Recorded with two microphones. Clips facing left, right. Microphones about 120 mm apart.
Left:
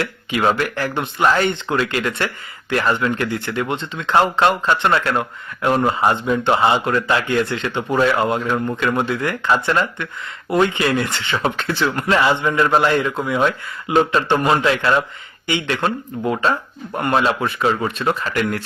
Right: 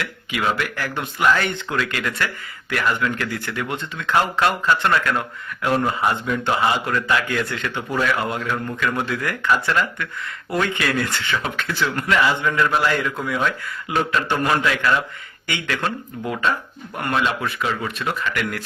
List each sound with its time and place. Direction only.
0.0 s speech: 35° left (ahead or behind)
11.4 s speech: 30° left (ahead or behind)